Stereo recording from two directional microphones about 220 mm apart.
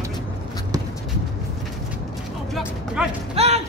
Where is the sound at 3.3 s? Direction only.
30° right (ahead or behind).